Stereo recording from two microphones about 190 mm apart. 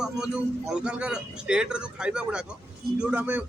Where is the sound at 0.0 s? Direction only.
5° right (ahead or behind).